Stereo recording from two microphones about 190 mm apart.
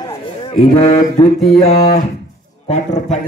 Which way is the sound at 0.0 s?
25° left (ahead or behind).